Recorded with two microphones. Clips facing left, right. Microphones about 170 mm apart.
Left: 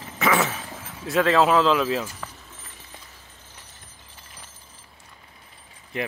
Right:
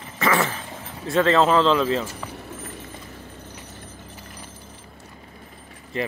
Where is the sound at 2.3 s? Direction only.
65° right (ahead or behind).